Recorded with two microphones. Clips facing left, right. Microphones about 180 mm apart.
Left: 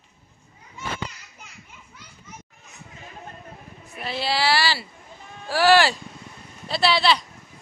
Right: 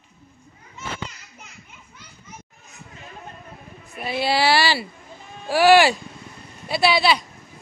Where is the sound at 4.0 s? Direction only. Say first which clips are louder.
Right 4 dB; 15° right (ahead or behind).